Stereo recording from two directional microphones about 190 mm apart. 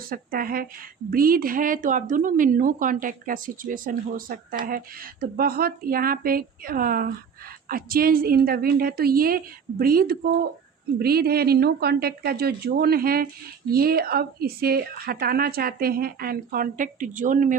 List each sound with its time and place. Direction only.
0.1 s a woman's voice: 50° right (ahead or behind)